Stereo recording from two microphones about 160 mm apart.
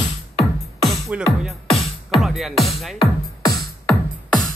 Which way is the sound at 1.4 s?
Centre (ahead or behind).